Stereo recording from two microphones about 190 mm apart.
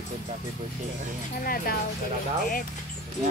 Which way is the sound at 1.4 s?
50° left (ahead or behind).